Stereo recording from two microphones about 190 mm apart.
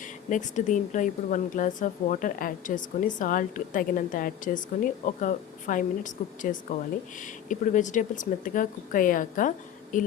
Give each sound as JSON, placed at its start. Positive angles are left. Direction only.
{"t": 0.0, "sound": "a woman's voice", "side_deg": 40}